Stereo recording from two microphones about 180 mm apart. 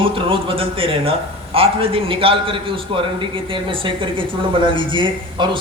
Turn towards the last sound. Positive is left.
turn(degrees=-25)  # may be behind; listen again after turning